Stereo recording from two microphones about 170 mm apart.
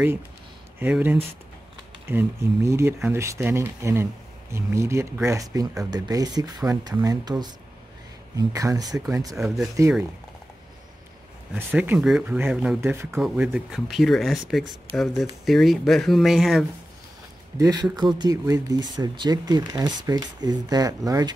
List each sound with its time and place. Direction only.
0.7 s speech: 10° right (ahead or behind)
11.5 s speech: 10° right (ahead or behind)
13.2 s speech: 5° right (ahead or behind)
17.6 s speech: 25° right (ahead or behind)